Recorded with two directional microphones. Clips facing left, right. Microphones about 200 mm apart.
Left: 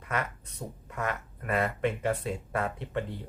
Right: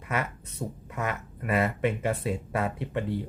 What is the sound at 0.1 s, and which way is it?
Speech, 5° right (ahead or behind).